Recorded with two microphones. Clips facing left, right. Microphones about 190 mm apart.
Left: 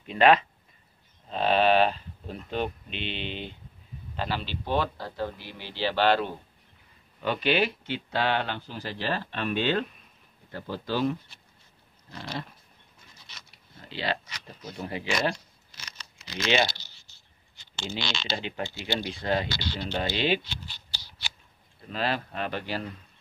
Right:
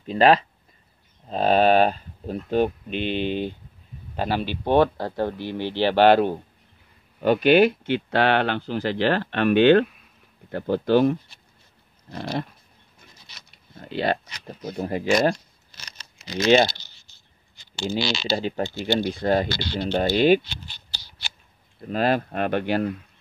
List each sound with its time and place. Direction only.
0.0 s speech: 35° right (ahead or behind)
1.3 s a sound: 45° right (ahead or behind)
2.5 s speech: 45° right (ahead or behind)
12.1 s speech: 45° right (ahead or behind)
13.7 s a sound: 50° right (ahead or behind)
14.6 s speech: 45° right (ahead or behind)
17.9 s speech: 10° right (ahead or behind)
18.3 s speech: 40° right (ahead or behind)
21.8 s speech: 50° right (ahead or behind)